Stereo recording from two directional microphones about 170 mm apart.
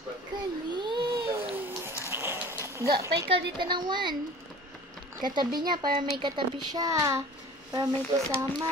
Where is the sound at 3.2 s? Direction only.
30° right (ahead or behind).